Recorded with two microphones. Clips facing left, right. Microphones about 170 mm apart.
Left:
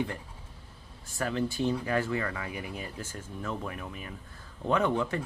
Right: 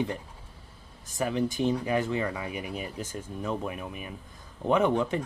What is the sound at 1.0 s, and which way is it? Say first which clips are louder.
Speech: right 3 dB; 15° right (ahead or behind).